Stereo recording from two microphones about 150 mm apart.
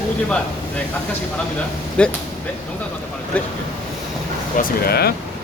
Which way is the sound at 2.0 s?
5° left (ahead or behind).